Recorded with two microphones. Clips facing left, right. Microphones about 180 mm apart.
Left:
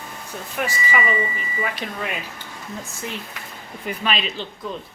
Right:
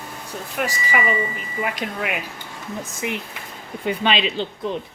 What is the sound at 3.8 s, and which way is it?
Speech, 25° right (ahead or behind).